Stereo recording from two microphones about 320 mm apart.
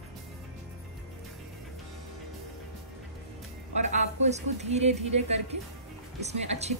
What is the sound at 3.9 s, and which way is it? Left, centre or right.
A woman's voice, right.